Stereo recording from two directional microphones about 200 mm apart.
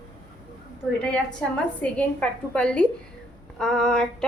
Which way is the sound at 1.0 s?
5° left (ahead or behind).